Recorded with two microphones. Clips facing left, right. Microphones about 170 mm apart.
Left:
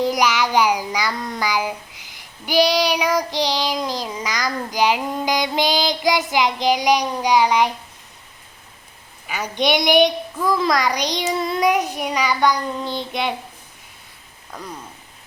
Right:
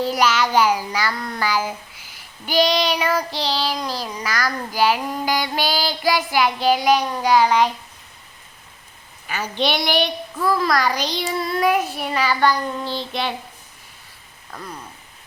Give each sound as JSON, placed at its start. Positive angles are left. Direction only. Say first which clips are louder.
{"t": 0.0, "sound": "child singing", "louder": "even", "side_deg": 15}
{"t": 9.2, "sound": "child singing", "louder": "left 1 dB", "side_deg": 15}